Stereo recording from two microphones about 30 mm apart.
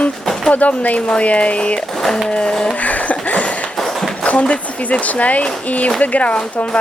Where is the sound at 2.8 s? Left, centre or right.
Left.